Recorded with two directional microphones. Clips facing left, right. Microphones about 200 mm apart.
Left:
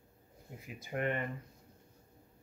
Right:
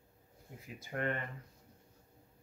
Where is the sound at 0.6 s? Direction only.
20° left (ahead or behind).